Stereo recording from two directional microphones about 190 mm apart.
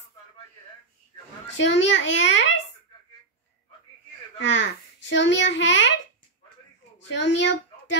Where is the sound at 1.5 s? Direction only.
70° left (ahead or behind).